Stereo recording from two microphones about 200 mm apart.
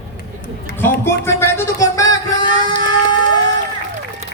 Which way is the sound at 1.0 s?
10° left (ahead or behind).